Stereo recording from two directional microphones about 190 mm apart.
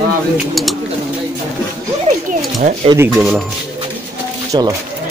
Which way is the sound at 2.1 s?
40° right (ahead or behind).